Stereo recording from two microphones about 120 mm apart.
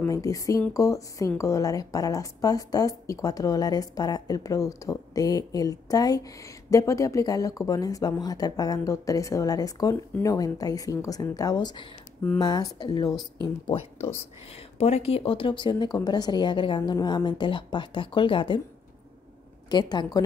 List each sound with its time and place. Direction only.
0.0 s speech: 30° left (ahead or behind)
13.4 s speech: 45° left (ahead or behind)
14.5 s speech: 60° left (ahead or behind); by 18.6 s 45° left (ahead or behind)
19.7 s speech: 35° left (ahead or behind)